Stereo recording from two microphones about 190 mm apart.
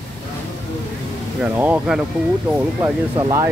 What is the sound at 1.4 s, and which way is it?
Speech, 5° right (ahead or behind).